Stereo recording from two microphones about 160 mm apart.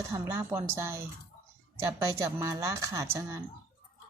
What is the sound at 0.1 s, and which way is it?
Speech, 15° right (ahead or behind).